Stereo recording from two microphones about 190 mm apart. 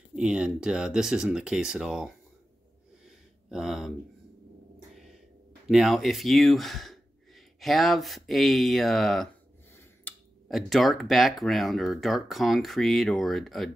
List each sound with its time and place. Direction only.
0.1 s speech: 5° right (ahead or behind)
3.4 s speech: centre (ahead or behind)
5.7 s speech: centre (ahead or behind)